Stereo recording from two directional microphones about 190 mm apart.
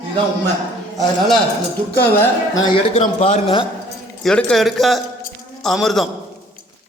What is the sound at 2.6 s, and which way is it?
Speech, 30° left (ahead or behind).